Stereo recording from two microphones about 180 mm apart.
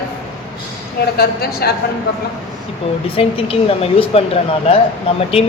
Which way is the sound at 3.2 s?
30° left (ahead or behind).